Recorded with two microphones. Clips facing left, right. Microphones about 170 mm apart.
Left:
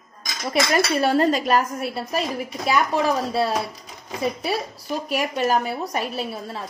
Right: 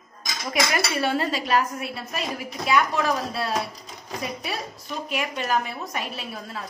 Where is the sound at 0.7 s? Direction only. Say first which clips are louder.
Left 5 dB; 40° left (ahead or behind).